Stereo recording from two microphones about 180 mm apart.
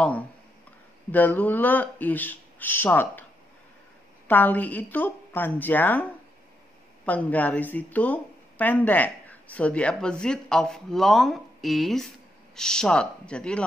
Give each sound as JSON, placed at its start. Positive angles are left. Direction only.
{"t": 1.1, "sound": "speech", "side_deg": 10}
{"t": 4.3, "sound": "speech", "side_deg": 10}
{"t": 7.1, "sound": "speech", "side_deg": 10}